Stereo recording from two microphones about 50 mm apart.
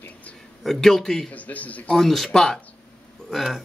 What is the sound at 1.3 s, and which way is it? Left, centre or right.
Speech, left.